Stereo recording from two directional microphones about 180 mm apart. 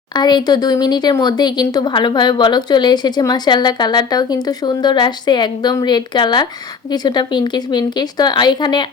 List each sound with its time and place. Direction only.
0.1 s speech: 25° left (ahead or behind)